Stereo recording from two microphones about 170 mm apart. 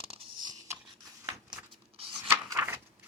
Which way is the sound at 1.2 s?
20° right (ahead or behind).